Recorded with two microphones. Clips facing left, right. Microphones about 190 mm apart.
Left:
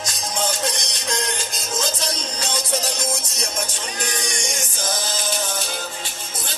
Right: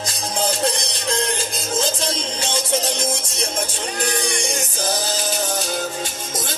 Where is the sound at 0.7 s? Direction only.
30° right (ahead or behind).